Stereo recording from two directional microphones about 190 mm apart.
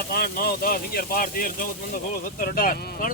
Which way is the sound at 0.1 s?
55° left (ahead or behind).